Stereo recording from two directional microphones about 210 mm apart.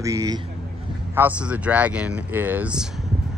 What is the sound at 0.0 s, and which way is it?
Speech, 15° right (ahead or behind).